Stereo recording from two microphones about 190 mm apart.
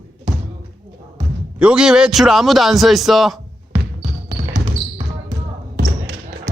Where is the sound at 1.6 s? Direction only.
5° right (ahead or behind).